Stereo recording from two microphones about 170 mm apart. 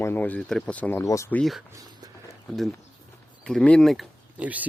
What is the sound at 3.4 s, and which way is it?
Speech, 5° left (ahead or behind).